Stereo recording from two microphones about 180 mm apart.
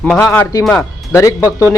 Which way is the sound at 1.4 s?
10° right (ahead or behind).